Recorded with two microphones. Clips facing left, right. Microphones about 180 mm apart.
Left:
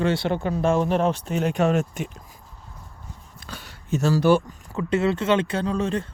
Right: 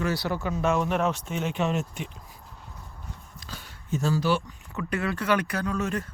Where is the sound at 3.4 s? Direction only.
70° left (ahead or behind).